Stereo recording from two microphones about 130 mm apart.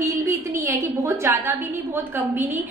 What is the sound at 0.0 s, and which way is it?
A woman's voice, 20° right (ahead or behind).